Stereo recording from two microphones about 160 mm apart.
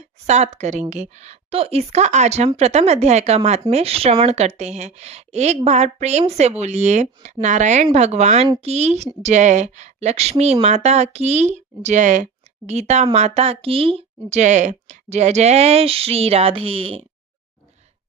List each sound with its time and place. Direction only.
0.3 s a woman's voice: 45° right (ahead or behind)